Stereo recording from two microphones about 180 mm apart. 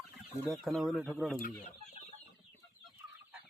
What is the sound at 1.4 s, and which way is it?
Chicken, 40° left (ahead or behind).